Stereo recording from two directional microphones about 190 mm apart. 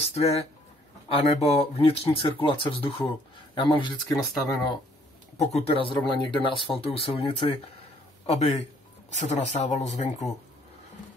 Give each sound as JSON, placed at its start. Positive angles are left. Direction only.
{"t": 0.1, "sound": "speech", "side_deg": 35}
{"t": 4.1, "sound": "speech", "side_deg": 0}
{"t": 5.4, "sound": "speech", "side_deg": 35}